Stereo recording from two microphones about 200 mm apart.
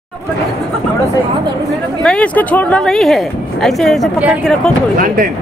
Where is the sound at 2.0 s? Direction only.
5° left (ahead or behind).